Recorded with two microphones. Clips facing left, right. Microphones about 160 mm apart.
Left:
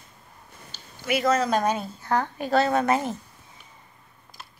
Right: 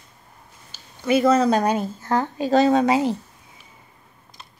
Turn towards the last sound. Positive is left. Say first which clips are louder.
# right 5 dB
turn(degrees=-15)  # may be behind; listen again after turning